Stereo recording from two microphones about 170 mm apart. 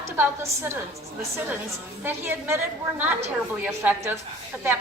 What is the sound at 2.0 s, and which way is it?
A woman's voice, 15° right (ahead or behind).